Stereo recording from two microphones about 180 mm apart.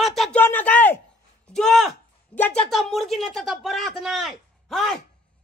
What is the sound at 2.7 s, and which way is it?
Speech, centre (ahead or behind).